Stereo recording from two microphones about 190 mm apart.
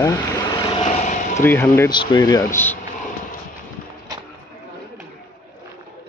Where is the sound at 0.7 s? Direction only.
35° left (ahead or behind).